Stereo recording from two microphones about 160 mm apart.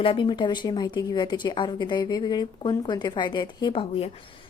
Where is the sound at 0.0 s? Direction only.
30° left (ahead or behind).